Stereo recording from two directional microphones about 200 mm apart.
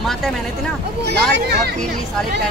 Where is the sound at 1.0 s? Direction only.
55° right (ahead or behind).